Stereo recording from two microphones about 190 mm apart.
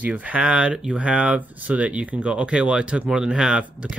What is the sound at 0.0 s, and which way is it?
Speech, 5° right (ahead or behind).